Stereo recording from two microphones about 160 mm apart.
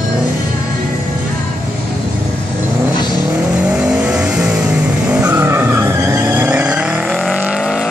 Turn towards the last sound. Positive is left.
turn(degrees=0)  # may be behind; listen again after turning